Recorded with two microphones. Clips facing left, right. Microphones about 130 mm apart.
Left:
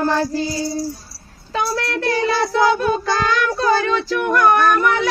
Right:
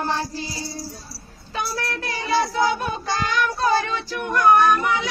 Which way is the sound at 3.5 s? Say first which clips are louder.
Left 4 dB; 90° left.